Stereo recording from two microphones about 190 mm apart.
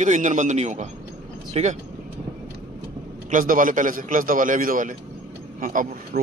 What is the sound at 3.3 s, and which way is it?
A man's voice, 45° right (ahead or behind).